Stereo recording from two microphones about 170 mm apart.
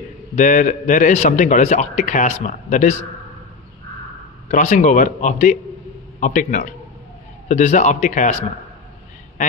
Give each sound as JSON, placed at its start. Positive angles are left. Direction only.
{"t": 0.4, "sound": "a man's voice", "side_deg": 50}
{"t": 4.5, "sound": "a man's voice", "side_deg": 45}